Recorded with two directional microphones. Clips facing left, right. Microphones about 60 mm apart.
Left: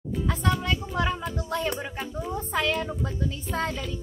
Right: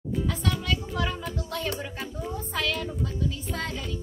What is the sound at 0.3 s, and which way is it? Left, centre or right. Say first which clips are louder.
Music: left 6 dB; left.